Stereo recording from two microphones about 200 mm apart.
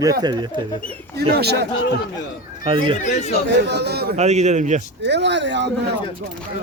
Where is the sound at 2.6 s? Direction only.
25° right (ahead or behind).